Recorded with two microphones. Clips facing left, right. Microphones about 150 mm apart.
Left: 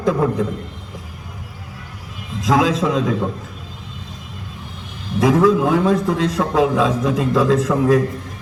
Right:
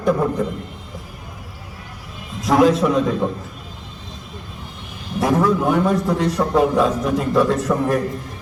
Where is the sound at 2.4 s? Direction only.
90° left.